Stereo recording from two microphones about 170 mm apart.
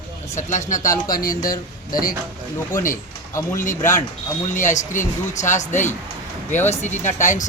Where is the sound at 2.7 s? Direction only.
55° left (ahead or behind).